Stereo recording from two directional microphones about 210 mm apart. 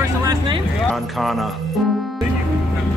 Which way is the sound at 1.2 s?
Centre (ahead or behind).